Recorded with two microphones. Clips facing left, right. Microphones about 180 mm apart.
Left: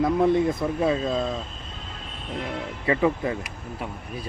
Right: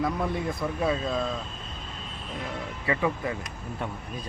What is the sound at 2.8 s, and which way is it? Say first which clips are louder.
Speech: left 5 dB; 25° left (ahead or behind).